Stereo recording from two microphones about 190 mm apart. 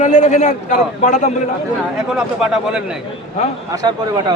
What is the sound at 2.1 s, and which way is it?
Speech, 5° right (ahead or behind).